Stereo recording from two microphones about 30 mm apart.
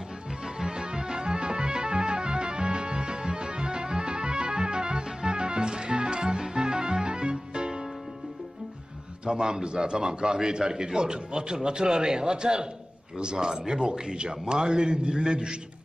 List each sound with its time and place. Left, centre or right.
0.7 s music: right
9.2 s a man's voice: right